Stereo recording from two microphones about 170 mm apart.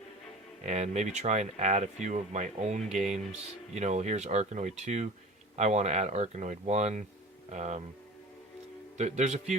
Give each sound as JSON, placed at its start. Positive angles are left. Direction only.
{"t": 0.6, "sound": "speech", "side_deg": -40}
{"t": 9.0, "sound": "speech", "side_deg": -45}